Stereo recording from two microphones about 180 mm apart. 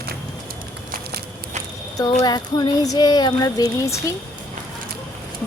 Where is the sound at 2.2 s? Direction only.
25° left (ahead or behind).